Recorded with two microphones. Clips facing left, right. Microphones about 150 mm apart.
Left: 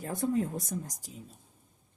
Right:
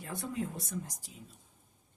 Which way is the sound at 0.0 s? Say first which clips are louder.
Left 7 dB; 45° left (ahead or behind).